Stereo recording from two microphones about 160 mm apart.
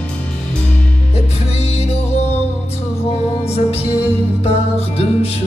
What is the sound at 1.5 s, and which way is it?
Music, 40° left (ahead or behind).